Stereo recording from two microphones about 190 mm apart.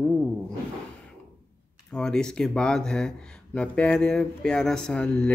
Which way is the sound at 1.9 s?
5° left (ahead or behind).